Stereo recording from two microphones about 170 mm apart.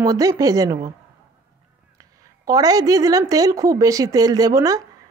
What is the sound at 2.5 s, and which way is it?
A woman's voice, 20° right (ahead or behind).